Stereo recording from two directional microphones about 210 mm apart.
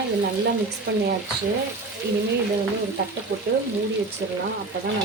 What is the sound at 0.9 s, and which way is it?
Speech, 50° right (ahead or behind).